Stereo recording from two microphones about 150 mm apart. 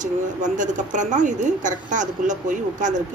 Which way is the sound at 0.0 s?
55° right (ahead or behind).